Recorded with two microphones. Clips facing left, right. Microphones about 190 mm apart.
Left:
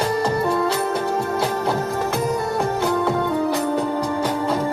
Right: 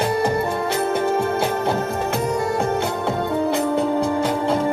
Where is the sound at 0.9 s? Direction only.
25° right (ahead or behind).